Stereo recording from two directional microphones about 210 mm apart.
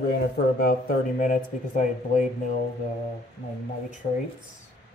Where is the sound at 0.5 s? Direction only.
45° left (ahead or behind).